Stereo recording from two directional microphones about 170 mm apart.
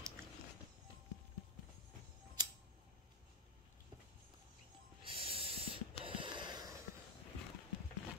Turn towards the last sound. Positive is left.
turn(degrees=-25)  # may be behind; listen again after turning